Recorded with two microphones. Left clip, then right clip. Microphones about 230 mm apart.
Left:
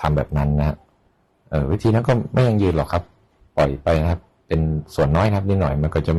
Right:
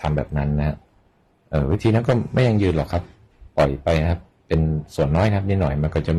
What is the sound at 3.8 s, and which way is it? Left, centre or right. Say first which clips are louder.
Speech: left 1 dB; centre.